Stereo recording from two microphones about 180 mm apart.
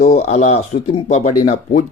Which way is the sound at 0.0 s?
35° left (ahead or behind).